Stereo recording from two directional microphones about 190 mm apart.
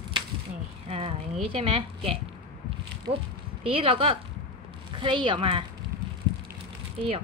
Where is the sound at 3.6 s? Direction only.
30° right (ahead or behind).